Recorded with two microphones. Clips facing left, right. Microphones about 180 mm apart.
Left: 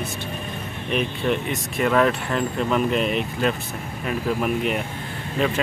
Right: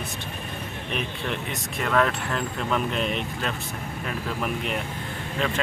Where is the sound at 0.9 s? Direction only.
5° left (ahead or behind).